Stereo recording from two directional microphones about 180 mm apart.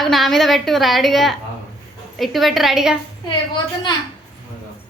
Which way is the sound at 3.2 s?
25° left (ahead or behind).